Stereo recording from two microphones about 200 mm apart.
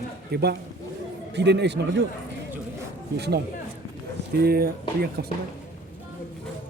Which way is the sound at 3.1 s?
55° right (ahead or behind).